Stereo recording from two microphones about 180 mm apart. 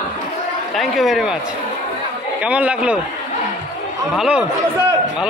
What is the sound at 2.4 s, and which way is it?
Speech, 5° right (ahead or behind).